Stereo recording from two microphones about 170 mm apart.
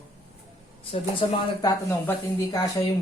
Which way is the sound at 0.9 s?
25° left (ahead or behind).